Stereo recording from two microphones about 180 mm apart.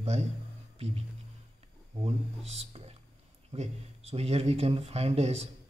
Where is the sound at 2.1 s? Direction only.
35° right (ahead or behind).